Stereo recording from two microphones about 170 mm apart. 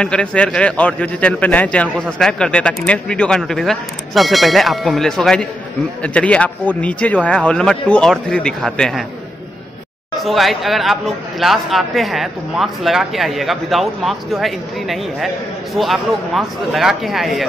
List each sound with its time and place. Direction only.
0.0 s a man's voice: 5° left (ahead or behind)
10.2 s a man's voice: centre (ahead or behind)